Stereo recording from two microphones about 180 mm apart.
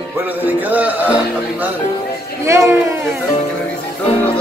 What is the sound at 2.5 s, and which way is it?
Speech, 15° right (ahead or behind).